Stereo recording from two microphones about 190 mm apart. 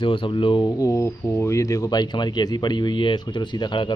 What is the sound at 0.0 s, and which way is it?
Speech, 25° left (ahead or behind).